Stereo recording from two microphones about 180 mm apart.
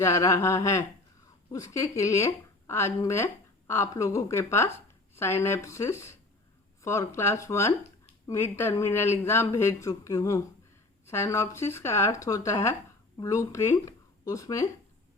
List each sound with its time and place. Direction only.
0.0 s speech: 15° left (ahead or behind)